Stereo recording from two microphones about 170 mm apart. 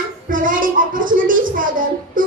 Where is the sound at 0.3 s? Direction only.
50° right (ahead or behind).